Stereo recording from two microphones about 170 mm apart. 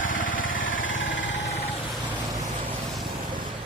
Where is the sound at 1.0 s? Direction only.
90° left.